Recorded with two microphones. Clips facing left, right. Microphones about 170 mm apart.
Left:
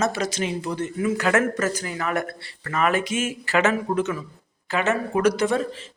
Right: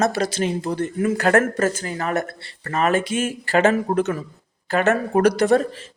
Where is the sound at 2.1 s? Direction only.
25° right (ahead or behind).